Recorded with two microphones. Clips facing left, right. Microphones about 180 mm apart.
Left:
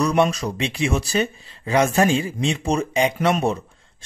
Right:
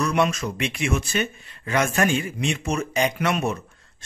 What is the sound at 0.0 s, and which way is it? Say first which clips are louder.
A man's voice: left 3 dB; 35° left (ahead or behind).